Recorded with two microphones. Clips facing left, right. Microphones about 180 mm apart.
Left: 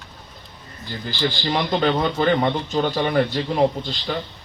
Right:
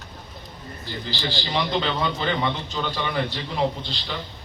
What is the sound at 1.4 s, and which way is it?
A man's voice, 50° left (ahead or behind).